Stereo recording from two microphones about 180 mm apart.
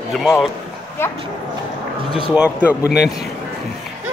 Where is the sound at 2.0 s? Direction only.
30° left (ahead or behind).